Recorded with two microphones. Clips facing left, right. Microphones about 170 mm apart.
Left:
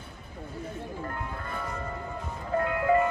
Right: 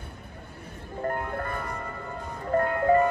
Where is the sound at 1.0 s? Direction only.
55° right (ahead or behind).